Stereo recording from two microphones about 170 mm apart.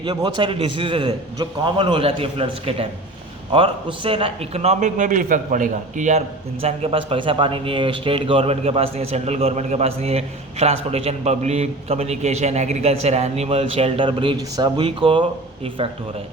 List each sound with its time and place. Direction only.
0.0 s a man's voice: 25° right (ahead or behind)